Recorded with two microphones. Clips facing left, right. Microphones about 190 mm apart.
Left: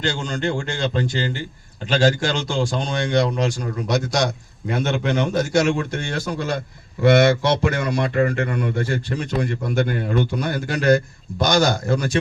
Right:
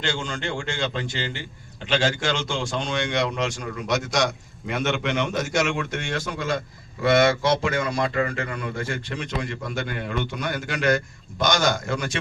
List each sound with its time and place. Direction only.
0.0 s a man's voice: 40° left (ahead or behind)
7.0 s speech: 60° left (ahead or behind)
8.9 s a man's voice: 35° left (ahead or behind)